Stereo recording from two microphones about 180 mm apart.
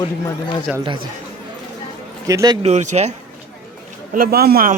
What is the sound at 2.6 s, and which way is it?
Speech, 40° right (ahead or behind).